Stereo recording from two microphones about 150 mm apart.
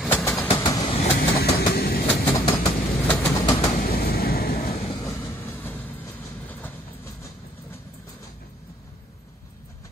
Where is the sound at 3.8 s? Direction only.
80° left.